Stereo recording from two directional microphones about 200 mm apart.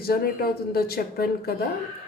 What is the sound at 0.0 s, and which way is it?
A woman's voice, 50° left (ahead or behind).